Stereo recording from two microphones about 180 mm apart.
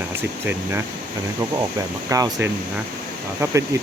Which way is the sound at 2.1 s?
20° right (ahead or behind).